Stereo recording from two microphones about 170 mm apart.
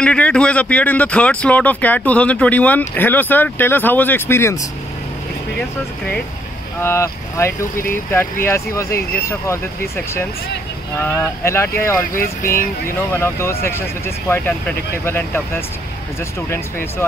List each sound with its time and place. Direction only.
0.0 s speech: 5° left (ahead or behind)